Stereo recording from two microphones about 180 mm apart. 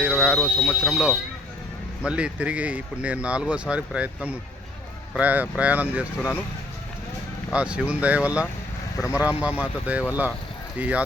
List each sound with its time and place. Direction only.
0.0 s alarm: 5° right (ahead or behind)
0.4 s speech: 5° left (ahead or behind)
7.5 s speech: 5° right (ahead or behind)
9.0 s speech: 20° left (ahead or behind)
9.2 s speech: 5° right (ahead or behind)